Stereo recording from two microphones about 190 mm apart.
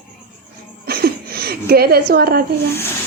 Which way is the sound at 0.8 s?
55° right (ahead or behind).